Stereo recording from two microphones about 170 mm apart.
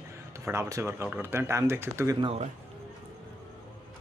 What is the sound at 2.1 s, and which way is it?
Speech, 30° right (ahead or behind).